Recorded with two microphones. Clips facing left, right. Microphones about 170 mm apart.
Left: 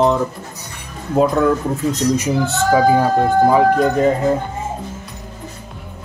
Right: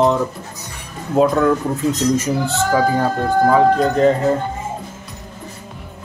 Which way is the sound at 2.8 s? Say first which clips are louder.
Left 5 dB; 15° left (ahead or behind).